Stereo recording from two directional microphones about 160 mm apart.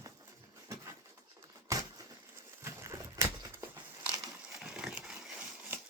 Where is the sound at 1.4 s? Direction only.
20° right (ahead or behind).